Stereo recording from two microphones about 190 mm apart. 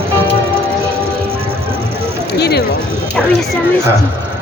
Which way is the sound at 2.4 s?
60° left (ahead or behind).